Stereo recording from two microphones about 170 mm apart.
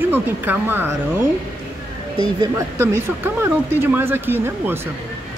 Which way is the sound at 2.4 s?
15° right (ahead or behind).